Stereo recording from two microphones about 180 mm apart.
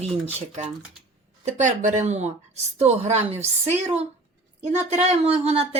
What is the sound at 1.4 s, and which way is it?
A woman's voice, 45° right (ahead or behind).